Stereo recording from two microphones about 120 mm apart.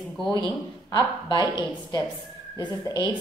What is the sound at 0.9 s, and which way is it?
Speech, 35° left (ahead or behind).